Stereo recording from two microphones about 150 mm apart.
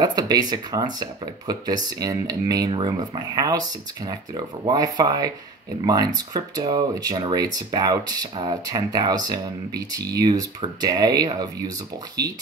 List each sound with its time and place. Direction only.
0.0 s speech: 25° right (ahead or behind)